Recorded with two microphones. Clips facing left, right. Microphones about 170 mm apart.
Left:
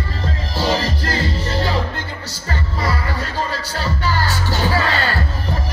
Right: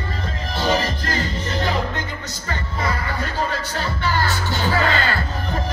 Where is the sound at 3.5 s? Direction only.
35° left (ahead or behind).